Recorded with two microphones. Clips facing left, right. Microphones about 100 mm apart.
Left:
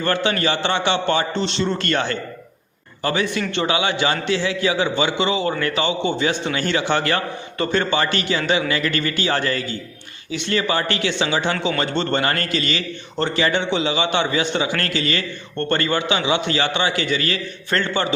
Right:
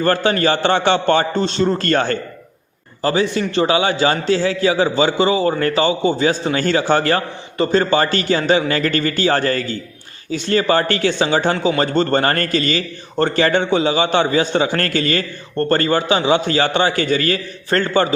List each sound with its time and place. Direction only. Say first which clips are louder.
0.0 s a man's voice: right 4 dB; 40° right (ahead or behind)
3.0 s a man's voice: right 4 dB; 30° right (ahead or behind)